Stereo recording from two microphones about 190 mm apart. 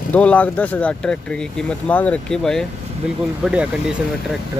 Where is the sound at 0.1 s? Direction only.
5° left (ahead or behind).